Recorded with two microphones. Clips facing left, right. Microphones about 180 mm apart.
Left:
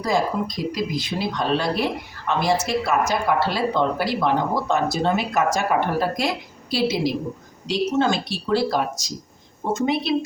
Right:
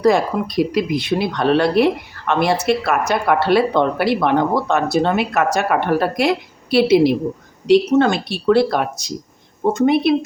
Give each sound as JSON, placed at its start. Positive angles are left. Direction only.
{"t": 0.0, "sound": "speech", "side_deg": -65}